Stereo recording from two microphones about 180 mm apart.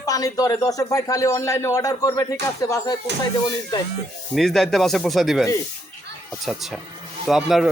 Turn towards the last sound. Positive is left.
turn(degrees=0)  # may be behind; listen again after turning